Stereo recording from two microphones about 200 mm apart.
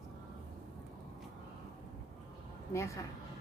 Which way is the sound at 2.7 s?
15° left (ahead or behind).